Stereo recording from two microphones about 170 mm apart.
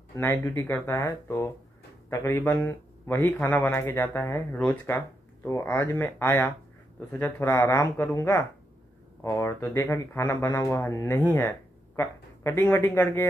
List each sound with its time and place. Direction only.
0.1 s a man's voice: 15° left (ahead or behind)